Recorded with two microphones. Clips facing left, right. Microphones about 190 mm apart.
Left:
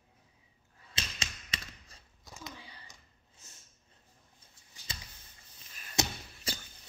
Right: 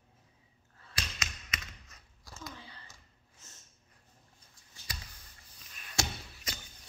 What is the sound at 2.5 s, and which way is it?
Sigh, 15° left (ahead or behind).